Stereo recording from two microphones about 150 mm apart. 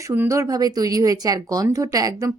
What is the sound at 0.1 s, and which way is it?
Speech, 15° right (ahead or behind).